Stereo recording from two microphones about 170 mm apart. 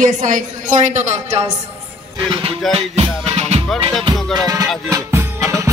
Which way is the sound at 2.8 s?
40° right (ahead or behind).